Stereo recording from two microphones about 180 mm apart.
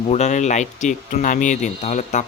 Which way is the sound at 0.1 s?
40° left (ahead or behind).